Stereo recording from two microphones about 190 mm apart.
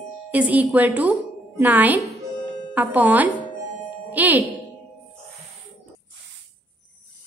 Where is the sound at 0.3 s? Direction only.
10° right (ahead or behind).